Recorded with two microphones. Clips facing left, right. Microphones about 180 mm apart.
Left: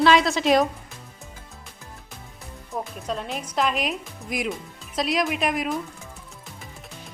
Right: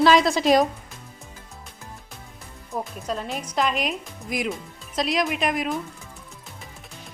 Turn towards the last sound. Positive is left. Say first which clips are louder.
# even
turn(degrees=0)  # may be behind; listen again after turning